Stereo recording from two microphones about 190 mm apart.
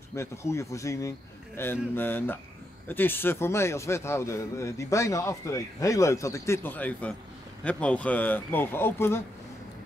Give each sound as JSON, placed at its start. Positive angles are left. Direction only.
{"t": 0.1, "sound": "a man's voice", "side_deg": 15}